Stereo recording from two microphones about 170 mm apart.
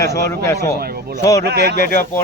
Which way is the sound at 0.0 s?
20° left (ahead or behind).